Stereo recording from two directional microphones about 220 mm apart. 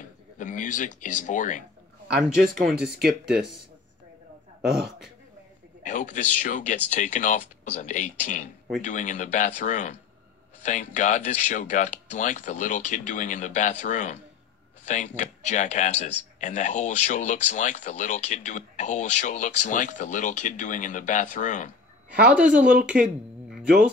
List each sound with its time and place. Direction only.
0.4 s speech: 35° left (ahead or behind)
2.5 s speech: centre (ahead or behind)
4.6 s speech: centre (ahead or behind)
5.9 s speech: 35° left (ahead or behind)
22.2 s speech: 5° right (ahead or behind)